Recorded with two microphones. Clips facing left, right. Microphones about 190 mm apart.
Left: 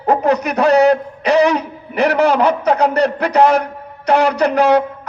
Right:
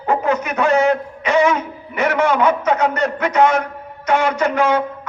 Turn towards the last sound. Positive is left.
turn(degrees=35)  # may be behind; listen again after turning